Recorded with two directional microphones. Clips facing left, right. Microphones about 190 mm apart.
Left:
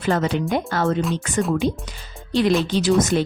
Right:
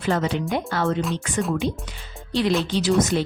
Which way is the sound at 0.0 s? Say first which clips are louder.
Left 2 dB; 50° left (ahead or behind).